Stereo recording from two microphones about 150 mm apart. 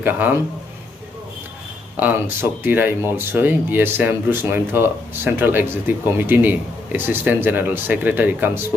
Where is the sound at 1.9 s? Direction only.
10° right (ahead or behind).